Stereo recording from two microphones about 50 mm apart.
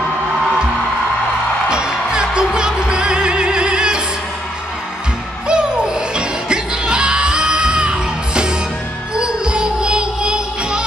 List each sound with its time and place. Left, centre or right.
1.7 s music: centre
5.5 s music: centre